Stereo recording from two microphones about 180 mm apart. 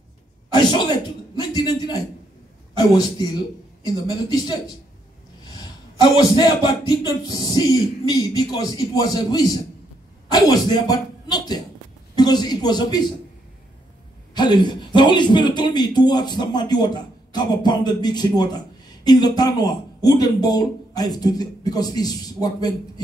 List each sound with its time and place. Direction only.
0.5 s a sound: 25° left (ahead or behind)
3.8 s speech: 25° left (ahead or behind)
5.9 s speech: 20° left (ahead or behind)
14.3 s speech: 25° left (ahead or behind)